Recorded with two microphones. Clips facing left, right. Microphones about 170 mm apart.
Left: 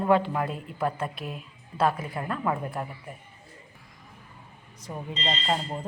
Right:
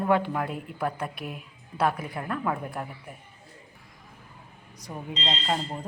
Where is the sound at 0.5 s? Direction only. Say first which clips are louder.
Left 1 dB; 10° right (ahead or behind).